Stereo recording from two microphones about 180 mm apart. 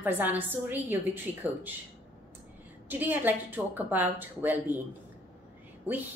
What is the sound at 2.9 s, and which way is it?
Speech, 10° right (ahead or behind).